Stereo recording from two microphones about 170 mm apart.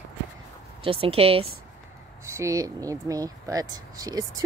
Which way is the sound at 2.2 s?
15° right (ahead or behind).